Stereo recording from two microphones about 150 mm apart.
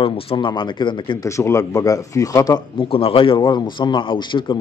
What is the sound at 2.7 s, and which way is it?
A man's voice, 35° left (ahead or behind).